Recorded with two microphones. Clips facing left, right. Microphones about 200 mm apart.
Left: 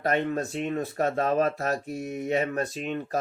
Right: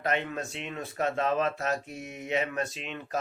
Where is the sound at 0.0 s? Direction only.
40° left (ahead or behind).